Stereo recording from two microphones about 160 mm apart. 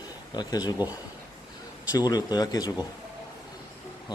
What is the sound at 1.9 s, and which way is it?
Speech, 25° left (ahead or behind).